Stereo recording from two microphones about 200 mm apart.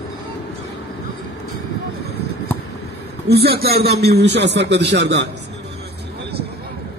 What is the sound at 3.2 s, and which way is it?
A man's voice, 55° right (ahead or behind).